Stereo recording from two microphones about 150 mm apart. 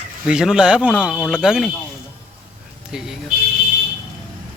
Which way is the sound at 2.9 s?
5° right (ahead or behind).